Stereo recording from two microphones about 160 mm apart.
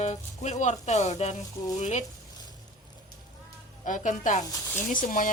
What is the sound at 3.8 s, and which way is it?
Speech, 55° left (ahead or behind).